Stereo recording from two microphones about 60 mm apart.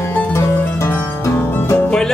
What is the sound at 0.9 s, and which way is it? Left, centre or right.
Music, left.